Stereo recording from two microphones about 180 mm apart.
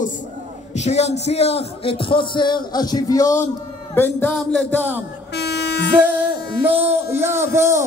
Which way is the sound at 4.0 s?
10° left (ahead or behind).